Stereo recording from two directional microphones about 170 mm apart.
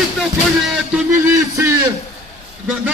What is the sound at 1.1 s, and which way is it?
Speech, 15° right (ahead or behind).